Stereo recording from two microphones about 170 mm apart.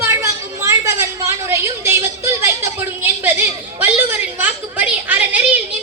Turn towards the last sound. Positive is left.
turn(degrees=-10)  # may be behind; listen again after turning